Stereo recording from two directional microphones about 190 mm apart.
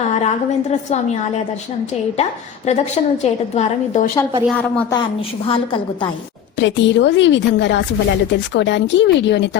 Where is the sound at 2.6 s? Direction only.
35° left (ahead or behind).